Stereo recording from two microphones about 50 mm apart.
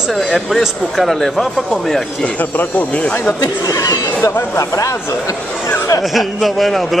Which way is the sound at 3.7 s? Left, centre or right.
Left.